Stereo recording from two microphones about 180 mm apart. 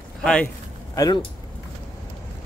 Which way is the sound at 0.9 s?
20° left (ahead or behind).